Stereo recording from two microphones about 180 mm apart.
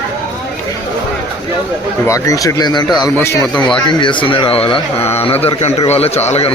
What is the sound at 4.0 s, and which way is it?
A man's voice, 25° left (ahead or behind).